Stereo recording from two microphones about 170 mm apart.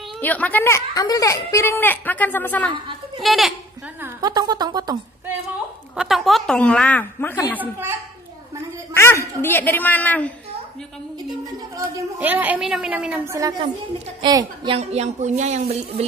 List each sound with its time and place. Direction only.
0.2 s speech: 10° left (ahead or behind)
3.2 s a woman's voice: centre (ahead or behind)
4.2 s a woman's voice: 25° right (ahead or behind)
5.9 s a woman's voice: centre (ahead or behind)
8.9 s speech: 15° left (ahead or behind)
11.7 s a woman's voice: 15° right (ahead or behind)
14.8 s speech: 40° right (ahead or behind)